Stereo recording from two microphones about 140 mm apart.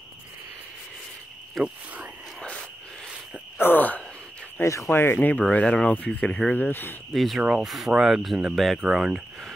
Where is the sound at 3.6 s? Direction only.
15° left (ahead or behind).